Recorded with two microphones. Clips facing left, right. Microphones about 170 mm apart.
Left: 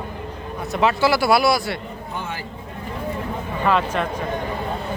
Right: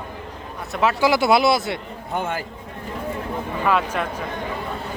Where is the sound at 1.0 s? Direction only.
20° right (ahead or behind).